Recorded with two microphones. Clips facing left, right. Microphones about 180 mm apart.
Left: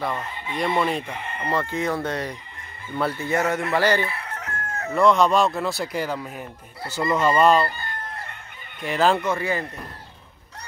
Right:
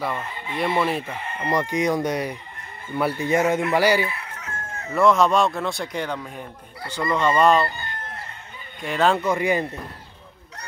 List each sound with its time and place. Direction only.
0.0 s speech: 5° right (ahead or behind)
8.8 s speech: centre (ahead or behind)
9.2 s speech: 15° right (ahead or behind)